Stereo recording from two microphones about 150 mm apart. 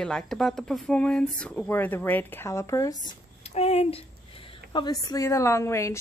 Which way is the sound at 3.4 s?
45° left (ahead or behind).